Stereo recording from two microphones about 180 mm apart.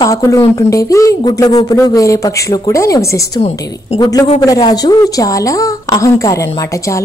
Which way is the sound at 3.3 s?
35° left (ahead or behind).